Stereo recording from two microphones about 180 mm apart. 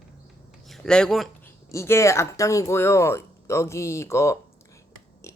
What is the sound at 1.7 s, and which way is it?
Speech, 15° left (ahead or behind).